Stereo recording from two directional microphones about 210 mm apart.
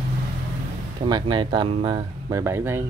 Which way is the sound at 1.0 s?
20° right (ahead or behind).